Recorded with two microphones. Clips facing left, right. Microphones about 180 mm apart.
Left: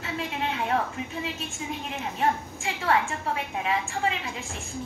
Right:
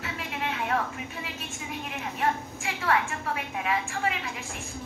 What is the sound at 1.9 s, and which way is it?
A woman's voice, 30° left (ahead or behind).